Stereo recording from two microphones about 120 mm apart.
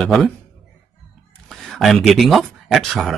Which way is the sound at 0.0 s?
Centre (ahead or behind).